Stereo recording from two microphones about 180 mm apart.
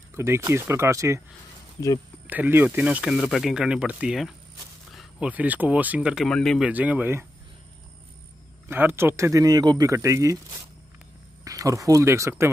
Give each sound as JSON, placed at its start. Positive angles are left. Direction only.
{"t": 0.1, "sound": "speech", "side_deg": -15}
{"t": 2.2, "sound": "speech", "side_deg": -10}
{"t": 6.7, "sound": "speech", "side_deg": -10}
{"t": 8.6, "sound": "speech", "side_deg": -10}
{"t": 11.4, "sound": "speech", "side_deg": -20}